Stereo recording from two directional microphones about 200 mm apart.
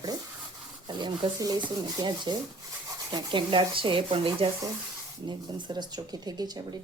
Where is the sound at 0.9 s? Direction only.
20° right (ahead or behind).